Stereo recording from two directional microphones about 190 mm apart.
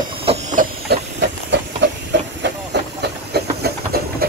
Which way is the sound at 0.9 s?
65° right (ahead or behind).